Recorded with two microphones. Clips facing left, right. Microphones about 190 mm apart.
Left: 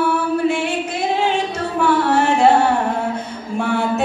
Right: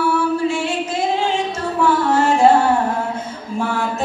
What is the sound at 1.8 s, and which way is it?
Music, 65° left (ahead or behind).